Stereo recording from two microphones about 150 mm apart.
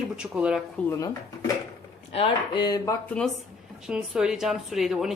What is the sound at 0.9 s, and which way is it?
Speech, 25° left (ahead or behind).